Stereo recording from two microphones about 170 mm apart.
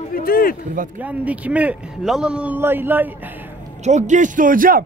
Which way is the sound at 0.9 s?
10° right (ahead or behind).